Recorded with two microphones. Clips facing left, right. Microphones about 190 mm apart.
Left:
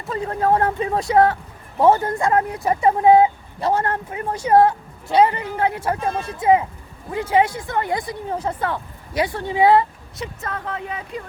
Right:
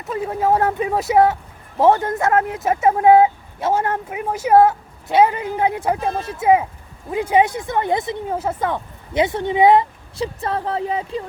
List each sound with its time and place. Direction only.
0.0 s a woman's voice: 5° right (ahead or behind)
1.8 s a woman's voice: centre (ahead or behind)
5.3 s a woman's voice: 15° right (ahead or behind)
8.3 s a woman's voice: 5° right (ahead or behind)
10.2 s speech: 30° right (ahead or behind)